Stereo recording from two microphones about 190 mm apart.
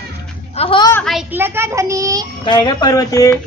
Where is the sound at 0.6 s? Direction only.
25° left (ahead or behind).